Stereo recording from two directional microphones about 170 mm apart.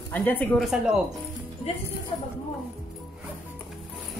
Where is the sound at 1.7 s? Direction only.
35° left (ahead or behind).